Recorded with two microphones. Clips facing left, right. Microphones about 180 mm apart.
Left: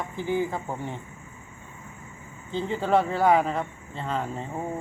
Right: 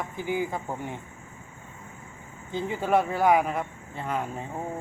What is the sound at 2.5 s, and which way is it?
Speech, 15° right (ahead or behind).